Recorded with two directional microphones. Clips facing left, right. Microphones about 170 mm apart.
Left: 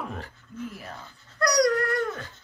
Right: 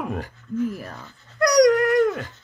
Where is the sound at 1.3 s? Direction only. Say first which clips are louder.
Right 6 dB; 20° right (ahead or behind).